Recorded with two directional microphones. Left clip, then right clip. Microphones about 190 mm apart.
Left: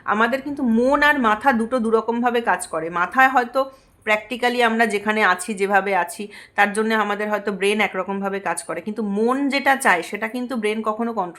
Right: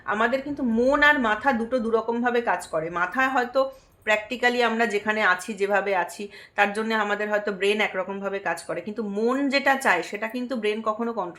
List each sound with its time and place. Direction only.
0.1 s speech: 40° left (ahead or behind)